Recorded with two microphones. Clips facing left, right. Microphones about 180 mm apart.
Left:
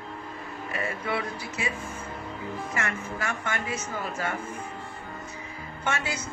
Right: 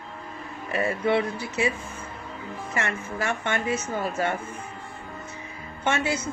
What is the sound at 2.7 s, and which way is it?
Speech, 30° right (ahead or behind).